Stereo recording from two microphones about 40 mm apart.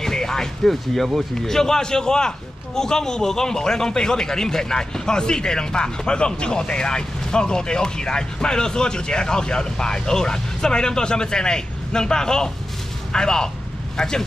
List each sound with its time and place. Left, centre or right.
0.0 s music: centre
1.3 s a man's voice: centre